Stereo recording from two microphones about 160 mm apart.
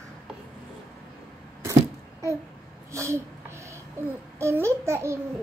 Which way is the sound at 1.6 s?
20° right (ahead or behind).